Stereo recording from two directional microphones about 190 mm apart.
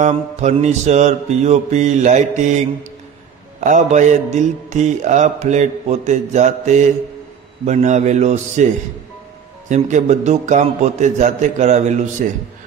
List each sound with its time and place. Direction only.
0.0 s mantra: 35° right (ahead or behind)
3.6 s mantra: 40° right (ahead or behind)